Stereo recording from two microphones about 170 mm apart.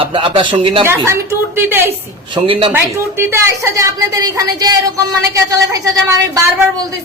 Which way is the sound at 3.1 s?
15° right (ahead or behind).